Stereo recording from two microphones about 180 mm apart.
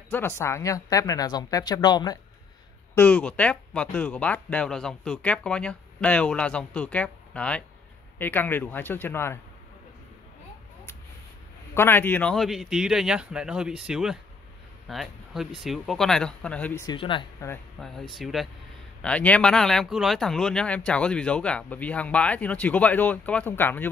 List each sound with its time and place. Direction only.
0.1 s speech: 15° left (ahead or behind)
2.9 s speech: 10° left (ahead or behind)
11.7 s speech: 10° left (ahead or behind)
16.8 s speech: 25° left (ahead or behind)
17.7 s speech: centre (ahead or behind)